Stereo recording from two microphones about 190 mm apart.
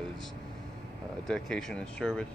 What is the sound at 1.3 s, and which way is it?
Speech, 5° left (ahead or behind).